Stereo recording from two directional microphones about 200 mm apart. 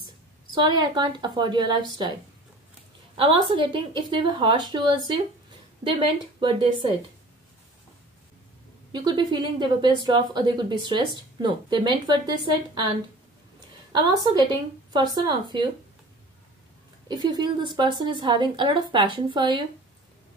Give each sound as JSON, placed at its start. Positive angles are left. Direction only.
{"t": 0.6, "sound": "a woman's voice", "side_deg": -20}
{"t": 3.2, "sound": "a woman's voice", "side_deg": -25}
{"t": 8.9, "sound": "a woman's voice", "side_deg": -20}
{"t": 13.9, "sound": "a woman's voice", "side_deg": -20}
{"t": 17.1, "sound": "a woman's voice", "side_deg": -20}